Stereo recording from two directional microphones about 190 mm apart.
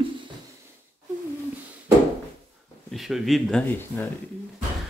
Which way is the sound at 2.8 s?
Centre (ahead or behind).